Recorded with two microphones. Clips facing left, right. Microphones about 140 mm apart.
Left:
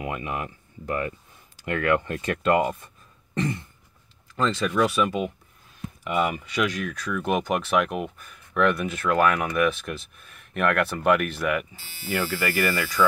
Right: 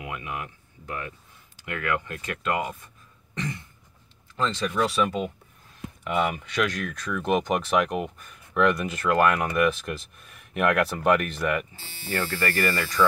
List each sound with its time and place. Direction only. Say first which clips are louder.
0.0 s speech: left 4 dB; 40° left (ahead or behind)
1.7 s speech: left 6 dB; 30° left (ahead or behind)
4.8 s speech: left 1 dB; 10° left (ahead or behind)